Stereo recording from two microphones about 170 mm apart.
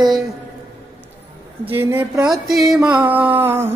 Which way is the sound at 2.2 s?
Centre (ahead or behind).